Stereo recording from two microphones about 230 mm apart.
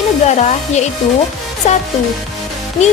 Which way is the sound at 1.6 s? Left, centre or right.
Left.